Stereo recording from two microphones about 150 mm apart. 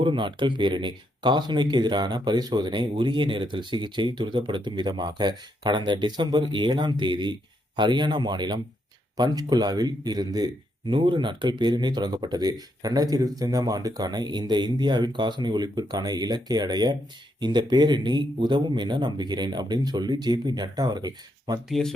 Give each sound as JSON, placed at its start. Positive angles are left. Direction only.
{"t": 0.0, "sound": "speech", "side_deg": -35}
{"t": 21.7, "sound": "speech", "side_deg": 5}